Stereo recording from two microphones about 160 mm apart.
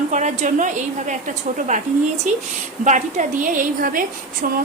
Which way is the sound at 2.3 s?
50° right (ahead or behind).